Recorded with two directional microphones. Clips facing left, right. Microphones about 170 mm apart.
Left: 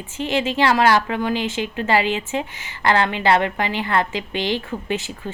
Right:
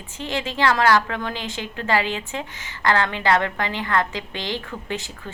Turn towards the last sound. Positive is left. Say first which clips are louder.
# left 5 dB
turn(degrees=15)  # may be behind; listen again after turning